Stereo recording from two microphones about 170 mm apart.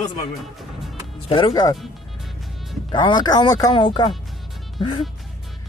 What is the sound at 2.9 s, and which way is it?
Speech, 25° left (ahead or behind).